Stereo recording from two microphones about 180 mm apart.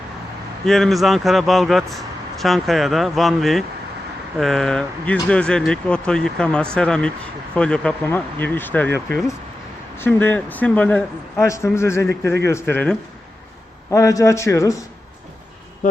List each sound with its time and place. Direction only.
0.6 s a man's voice: centre (ahead or behind)
10.0 s a man's voice: 10° left (ahead or behind)